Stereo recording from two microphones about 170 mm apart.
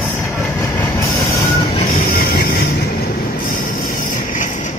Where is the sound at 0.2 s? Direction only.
15° left (ahead or behind).